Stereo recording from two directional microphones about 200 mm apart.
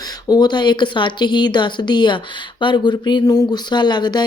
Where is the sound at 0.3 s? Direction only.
20° left (ahead or behind).